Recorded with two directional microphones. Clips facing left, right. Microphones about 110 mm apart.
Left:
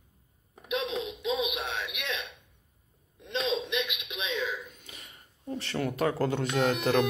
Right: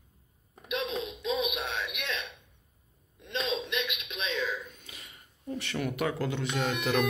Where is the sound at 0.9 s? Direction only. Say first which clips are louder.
Left 1 dB; 20° left (ahead or behind).